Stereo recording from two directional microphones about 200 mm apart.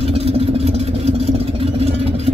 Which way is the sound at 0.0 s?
30° right (ahead or behind).